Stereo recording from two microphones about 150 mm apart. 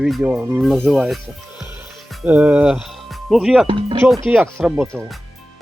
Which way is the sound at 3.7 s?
35° right (ahead or behind).